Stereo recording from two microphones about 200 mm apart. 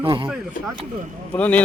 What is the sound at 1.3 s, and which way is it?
Speech, 5° left (ahead or behind).